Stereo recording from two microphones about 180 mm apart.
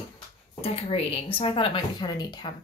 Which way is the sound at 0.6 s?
35° left (ahead or behind).